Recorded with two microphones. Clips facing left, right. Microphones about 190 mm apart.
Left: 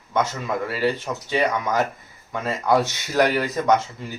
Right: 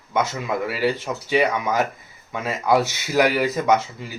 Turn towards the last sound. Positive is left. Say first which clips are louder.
# even
turn(degrees=-5)  # may be behind; listen again after turning